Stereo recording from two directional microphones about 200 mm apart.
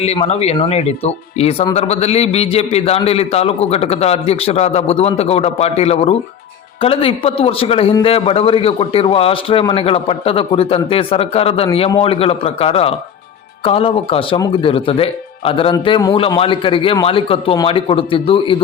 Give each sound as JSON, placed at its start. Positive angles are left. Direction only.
{"t": 0.0, "sound": "a man's voice", "side_deg": 30}